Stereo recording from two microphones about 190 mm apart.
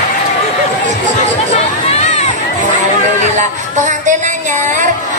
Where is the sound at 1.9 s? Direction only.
35° left (ahead or behind).